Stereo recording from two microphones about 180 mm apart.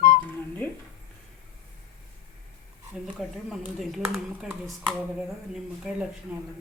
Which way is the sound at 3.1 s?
Centre (ahead or behind).